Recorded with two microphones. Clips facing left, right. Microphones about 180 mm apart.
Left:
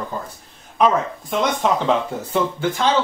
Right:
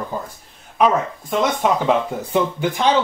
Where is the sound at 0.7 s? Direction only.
5° right (ahead or behind).